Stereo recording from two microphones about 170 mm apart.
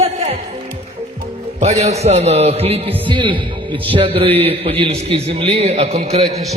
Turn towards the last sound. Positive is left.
turn(degrees=-35)  # may be behind; listen again after turning